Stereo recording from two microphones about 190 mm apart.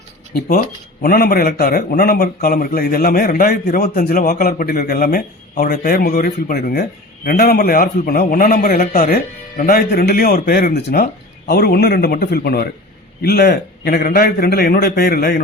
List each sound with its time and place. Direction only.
1.0 s a man's voice: 50° left (ahead or behind)